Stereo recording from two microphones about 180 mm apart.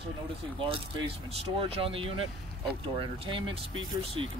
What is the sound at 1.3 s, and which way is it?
Speech, 30° right (ahead or behind).